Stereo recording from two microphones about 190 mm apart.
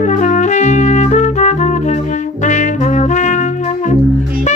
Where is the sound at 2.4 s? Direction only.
40° left (ahead or behind).